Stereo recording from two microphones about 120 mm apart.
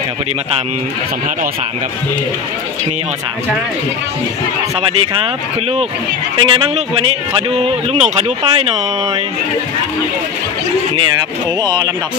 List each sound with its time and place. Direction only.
4.8 s speech: 50° right (ahead or behind)
11.6 s speech: 35° right (ahead or behind)